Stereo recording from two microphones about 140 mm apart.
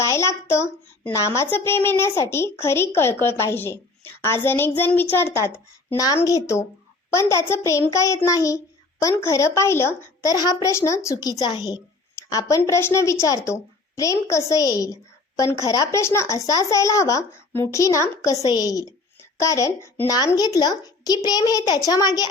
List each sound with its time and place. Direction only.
0.0 s speech: 20° left (ahead or behind)